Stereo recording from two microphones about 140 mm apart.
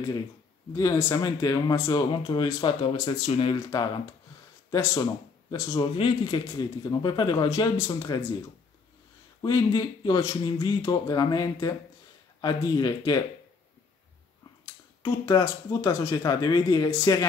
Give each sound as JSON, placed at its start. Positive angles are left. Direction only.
{"t": 0.7, "sound": "speech", "side_deg": 25}
{"t": 5.9, "sound": "speech", "side_deg": 40}
{"t": 9.4, "sound": "speech", "side_deg": 30}
{"t": 15.0, "sound": "speech", "side_deg": 25}